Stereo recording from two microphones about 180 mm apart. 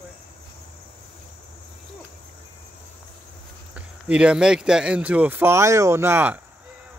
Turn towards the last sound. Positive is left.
turn(degrees=-10)  # may be behind; listen again after turning